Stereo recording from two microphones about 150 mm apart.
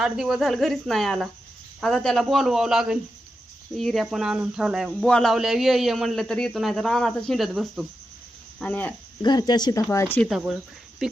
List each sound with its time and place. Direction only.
0.0 s speech: 5° right (ahead or behind)
8.5 s speech: 10° left (ahead or behind)
9.2 s speech: 30° left (ahead or behind)
10.2 s speech: centre (ahead or behind)